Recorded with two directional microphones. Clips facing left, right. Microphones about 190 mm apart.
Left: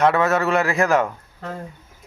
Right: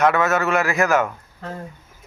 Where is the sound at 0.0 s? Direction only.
30° left (ahead or behind).